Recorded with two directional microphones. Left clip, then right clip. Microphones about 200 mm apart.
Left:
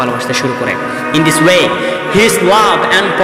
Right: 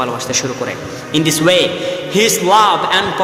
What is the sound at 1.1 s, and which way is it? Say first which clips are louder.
Speech: left 3 dB; 15° left (ahead or behind).